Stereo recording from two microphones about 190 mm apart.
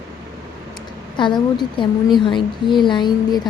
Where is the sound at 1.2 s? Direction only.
25° left (ahead or behind).